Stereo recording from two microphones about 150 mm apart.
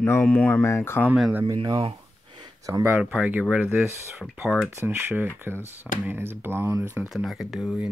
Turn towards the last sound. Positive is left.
turn(degrees=0)  # may be behind; listen again after turning